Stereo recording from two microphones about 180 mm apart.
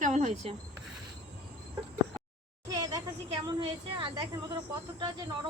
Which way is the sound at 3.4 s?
30° right (ahead or behind).